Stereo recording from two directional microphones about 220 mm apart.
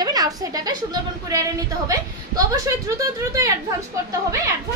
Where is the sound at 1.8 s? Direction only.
15° right (ahead or behind).